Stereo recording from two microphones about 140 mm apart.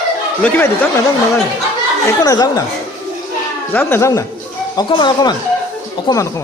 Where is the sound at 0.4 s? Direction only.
10° left (ahead or behind).